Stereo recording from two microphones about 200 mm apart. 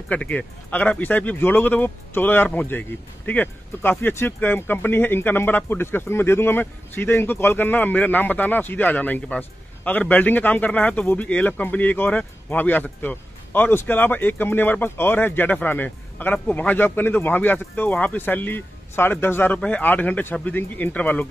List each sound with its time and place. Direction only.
0.1 s speech: 5° left (ahead or behind)